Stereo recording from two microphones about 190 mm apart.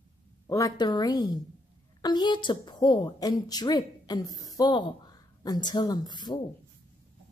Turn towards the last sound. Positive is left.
turn(degrees=20)  # may be behind; listen again after turning